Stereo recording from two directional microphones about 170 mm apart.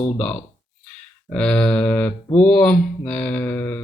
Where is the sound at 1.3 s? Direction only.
5° left (ahead or behind).